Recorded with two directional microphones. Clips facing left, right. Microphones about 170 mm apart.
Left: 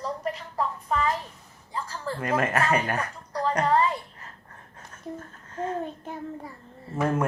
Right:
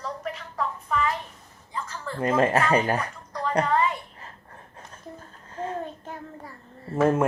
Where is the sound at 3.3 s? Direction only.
35° left (ahead or behind).